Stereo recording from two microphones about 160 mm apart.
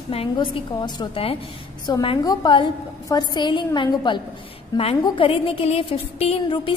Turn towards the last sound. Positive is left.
turn(degrees=30)  # may be behind; listen again after turning